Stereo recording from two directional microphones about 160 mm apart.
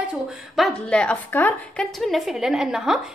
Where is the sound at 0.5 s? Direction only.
5° left (ahead or behind).